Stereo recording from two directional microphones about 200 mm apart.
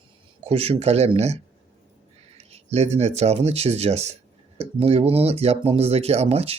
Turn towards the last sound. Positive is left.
turn(degrees=-30)  # may be behind; listen again after turning